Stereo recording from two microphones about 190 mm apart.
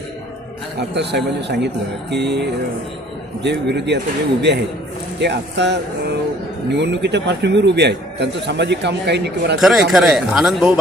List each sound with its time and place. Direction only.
0.8 s a man's voice: 60° right (ahead or behind)
9.6 s speech: centre (ahead or behind)